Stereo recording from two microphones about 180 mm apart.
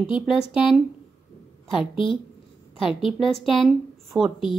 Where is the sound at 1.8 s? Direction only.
30° left (ahead or behind).